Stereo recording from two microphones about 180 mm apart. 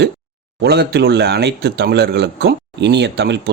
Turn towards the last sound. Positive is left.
turn(degrees=-70)  # may be behind; listen again after turning